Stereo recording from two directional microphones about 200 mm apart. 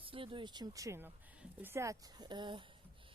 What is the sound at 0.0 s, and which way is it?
Speech, 25° right (ahead or behind).